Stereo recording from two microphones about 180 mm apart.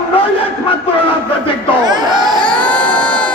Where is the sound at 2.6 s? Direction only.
5° left (ahead or behind).